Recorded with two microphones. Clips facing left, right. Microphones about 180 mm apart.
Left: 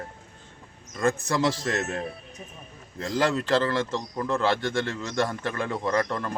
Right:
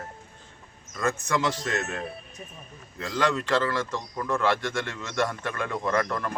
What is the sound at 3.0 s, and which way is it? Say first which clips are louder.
Speech: left 1 dB; 35° left (ahead or behind).